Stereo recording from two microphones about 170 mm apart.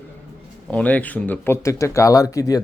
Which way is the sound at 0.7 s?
10° left (ahead or behind).